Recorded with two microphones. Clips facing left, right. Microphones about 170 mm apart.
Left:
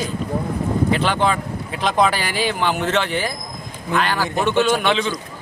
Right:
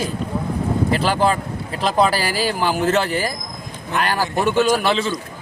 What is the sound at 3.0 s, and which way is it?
Speech, 40° right (ahead or behind).